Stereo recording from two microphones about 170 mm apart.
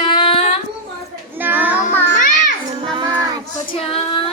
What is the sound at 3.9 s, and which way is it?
Female singing, 35° left (ahead or behind).